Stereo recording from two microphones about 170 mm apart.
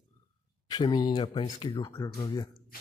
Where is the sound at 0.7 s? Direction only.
25° left (ahead or behind).